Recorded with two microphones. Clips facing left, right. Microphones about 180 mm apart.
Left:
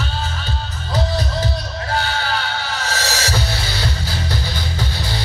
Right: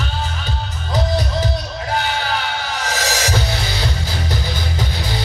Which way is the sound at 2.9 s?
15° right (ahead or behind).